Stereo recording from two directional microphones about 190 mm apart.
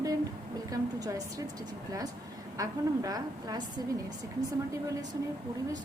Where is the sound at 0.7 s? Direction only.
20° right (ahead or behind).